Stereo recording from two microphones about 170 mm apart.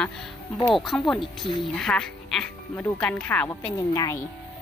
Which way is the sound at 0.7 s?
Centre (ahead or behind).